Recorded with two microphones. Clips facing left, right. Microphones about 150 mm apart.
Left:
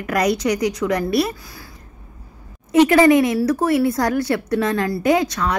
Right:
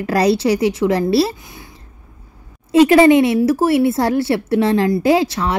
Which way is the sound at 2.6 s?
25° right (ahead or behind).